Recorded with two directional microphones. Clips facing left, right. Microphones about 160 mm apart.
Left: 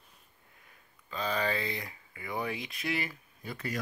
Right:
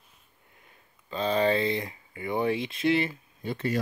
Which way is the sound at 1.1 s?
25° right (ahead or behind).